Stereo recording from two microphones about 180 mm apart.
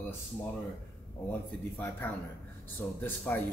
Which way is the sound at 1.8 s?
10° left (ahead or behind).